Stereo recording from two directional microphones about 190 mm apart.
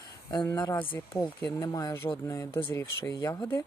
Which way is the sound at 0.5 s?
20° left (ahead or behind).